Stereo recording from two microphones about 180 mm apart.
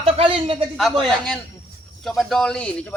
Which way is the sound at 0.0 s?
30° right (ahead or behind).